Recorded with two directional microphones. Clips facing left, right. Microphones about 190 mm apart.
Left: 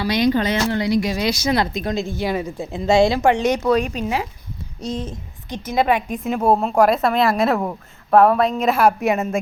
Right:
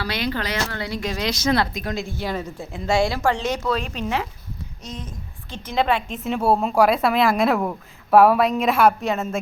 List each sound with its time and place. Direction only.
0.0 s a woman's voice: 15° left (ahead or behind)
1.7 s a woman's voice: 25° left (ahead or behind)
4.8 s a woman's voice: 30° left (ahead or behind)
5.5 s a woman's voice: 10° left (ahead or behind)